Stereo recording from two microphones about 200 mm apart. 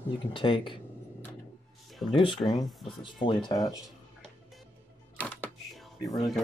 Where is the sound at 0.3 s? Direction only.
25° left (ahead or behind).